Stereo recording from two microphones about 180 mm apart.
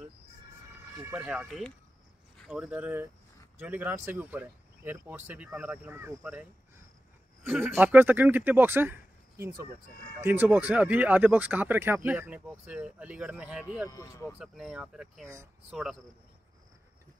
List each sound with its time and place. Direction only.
1.0 s speech: 5° right (ahead or behind)
7.4 s speech: 10° right (ahead or behind)
13.8 s speech: 20° left (ahead or behind)
14.2 s speech: 5° right (ahead or behind)